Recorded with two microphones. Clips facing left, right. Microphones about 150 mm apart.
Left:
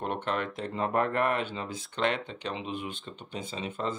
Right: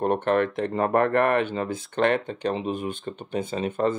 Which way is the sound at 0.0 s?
50° right (ahead or behind).